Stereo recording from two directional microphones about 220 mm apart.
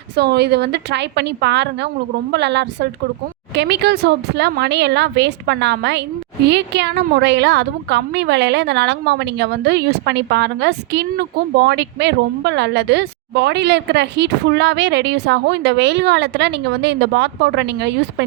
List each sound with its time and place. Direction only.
0.2 s speech: 50° right (ahead or behind)